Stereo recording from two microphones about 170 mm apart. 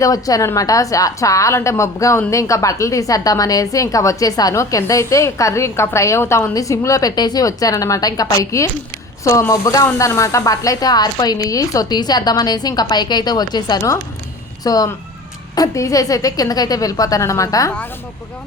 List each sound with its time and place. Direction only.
0.0 s a woman's voice: 20° left (ahead or behind)